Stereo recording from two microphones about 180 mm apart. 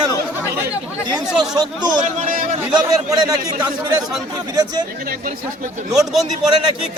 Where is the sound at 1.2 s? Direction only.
Centre (ahead or behind).